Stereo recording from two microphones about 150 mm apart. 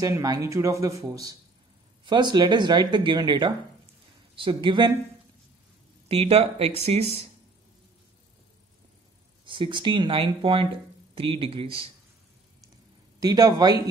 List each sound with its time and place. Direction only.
0.0 s speech: 25° right (ahead or behind)
6.0 s speech: 40° right (ahead or behind)
9.5 s speech: 30° right (ahead or behind)
13.2 s speech: 25° right (ahead or behind)